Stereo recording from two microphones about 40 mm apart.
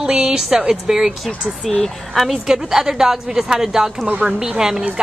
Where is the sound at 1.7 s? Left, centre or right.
Centre.